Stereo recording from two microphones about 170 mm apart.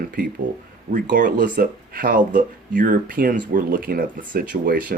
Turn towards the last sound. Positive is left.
turn(degrees=-55)  # may be behind; listen again after turning